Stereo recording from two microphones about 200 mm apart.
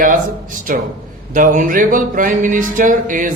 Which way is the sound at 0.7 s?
40° right (ahead or behind).